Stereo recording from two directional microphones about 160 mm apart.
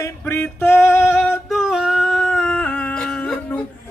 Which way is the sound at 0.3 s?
15° left (ahead or behind).